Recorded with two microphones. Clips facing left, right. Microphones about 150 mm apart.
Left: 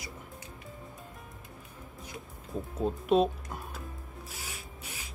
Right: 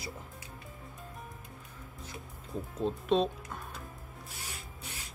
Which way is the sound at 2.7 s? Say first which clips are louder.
Left 3 dB; 10° left (ahead or behind).